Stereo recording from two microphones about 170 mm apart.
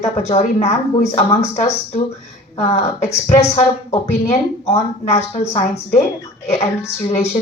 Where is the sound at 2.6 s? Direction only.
40° left (ahead or behind).